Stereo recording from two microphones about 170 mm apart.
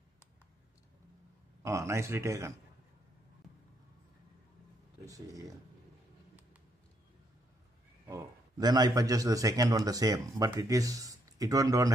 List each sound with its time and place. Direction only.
1.6 s speech: 15° right (ahead or behind)
5.0 s a man's voice: 20° right (ahead or behind)
8.1 s a man's voice: 25° right (ahead or behind)